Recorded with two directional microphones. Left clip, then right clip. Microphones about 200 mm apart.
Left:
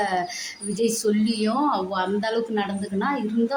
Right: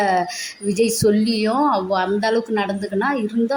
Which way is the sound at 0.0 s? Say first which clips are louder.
Right 6 dB; 20° right (ahead or behind).